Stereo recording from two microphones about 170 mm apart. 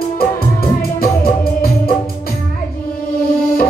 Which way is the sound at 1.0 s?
60° left (ahead or behind).